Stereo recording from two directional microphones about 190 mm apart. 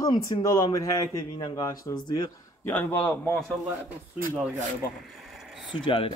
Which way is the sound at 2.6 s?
10° left (ahead or behind).